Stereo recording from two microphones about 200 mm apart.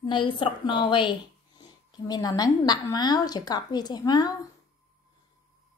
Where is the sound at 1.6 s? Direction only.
20° left (ahead or behind).